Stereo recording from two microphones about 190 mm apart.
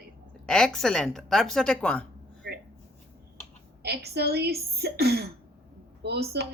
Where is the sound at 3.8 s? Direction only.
60° right (ahead or behind).